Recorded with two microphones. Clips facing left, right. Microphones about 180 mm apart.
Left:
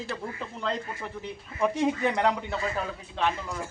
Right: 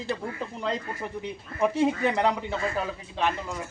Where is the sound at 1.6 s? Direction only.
5° right (ahead or behind).